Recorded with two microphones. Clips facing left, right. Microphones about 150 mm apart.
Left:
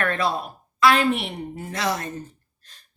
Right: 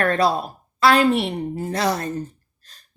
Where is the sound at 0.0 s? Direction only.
35° right (ahead or behind).